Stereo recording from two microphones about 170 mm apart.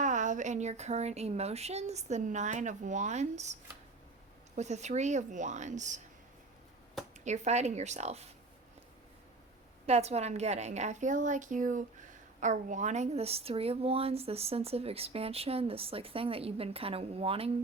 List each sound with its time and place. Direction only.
0.0 s a woman's voice: 45° right (ahead or behind)
7.3 s speech: 40° right (ahead or behind)
9.8 s speech: 40° right (ahead or behind)